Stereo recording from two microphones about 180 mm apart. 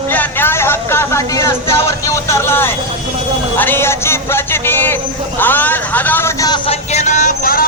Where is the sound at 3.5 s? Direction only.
10° left (ahead or behind).